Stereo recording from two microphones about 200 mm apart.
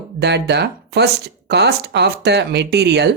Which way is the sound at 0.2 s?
60° right (ahead or behind).